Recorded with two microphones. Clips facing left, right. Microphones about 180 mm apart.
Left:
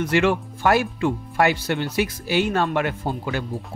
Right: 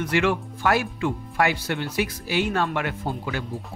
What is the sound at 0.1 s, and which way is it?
Speech, 30° left (ahead or behind).